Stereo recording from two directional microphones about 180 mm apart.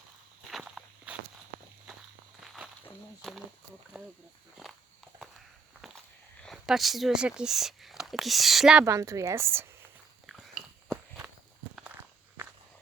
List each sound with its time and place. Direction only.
0.5 s walk: centre (ahead or behind)
2.4 s walk: centre (ahead or behind)
3.2 s a sound: centre (ahead or behind)
3.9 s speech: 5° right (ahead or behind)
6.4 s speech: centre (ahead or behind)
8.8 s a woman's voice: 15° right (ahead or behind)
10.2 s biting: centre (ahead or behind)